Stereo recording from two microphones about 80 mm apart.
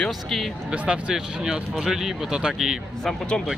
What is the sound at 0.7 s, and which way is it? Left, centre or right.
Speech, centre.